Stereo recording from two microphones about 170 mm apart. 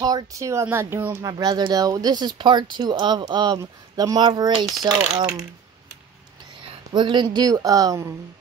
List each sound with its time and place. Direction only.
0.0 s speech: 20° right (ahead or behind)
6.9 s speech: 25° right (ahead or behind)